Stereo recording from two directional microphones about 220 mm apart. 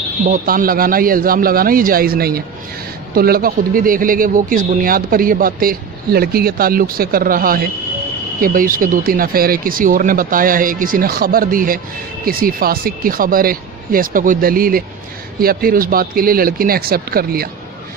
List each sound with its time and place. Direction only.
0.2 s a man's voice: 40° right (ahead or behind)